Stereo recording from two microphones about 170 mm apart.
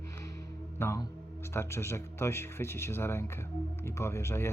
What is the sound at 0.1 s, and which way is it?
Speech, 15° left (ahead or behind).